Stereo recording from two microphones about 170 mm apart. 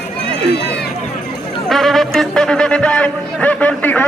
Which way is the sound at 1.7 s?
Centre (ahead or behind).